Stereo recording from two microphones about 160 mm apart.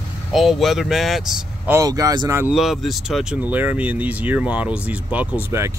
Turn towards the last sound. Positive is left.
turn(degrees=-15)  # may be behind; listen again after turning